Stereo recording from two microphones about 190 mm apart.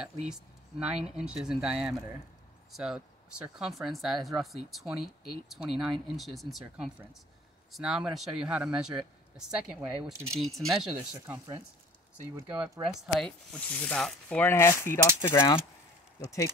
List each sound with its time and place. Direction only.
0.3 s speech: 5° right (ahead or behind)
10.3 s speech: centre (ahead or behind)
12.8 s speech: 5° left (ahead or behind)